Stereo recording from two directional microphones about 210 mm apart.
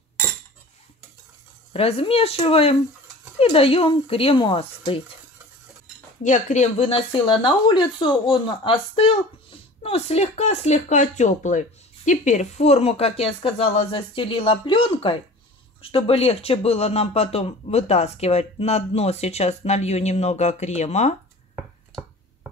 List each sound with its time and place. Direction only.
1.7 s speech: 30° left (ahead or behind)
6.2 s speech: 35° left (ahead or behind)
21.5 s a sound: 10° right (ahead or behind)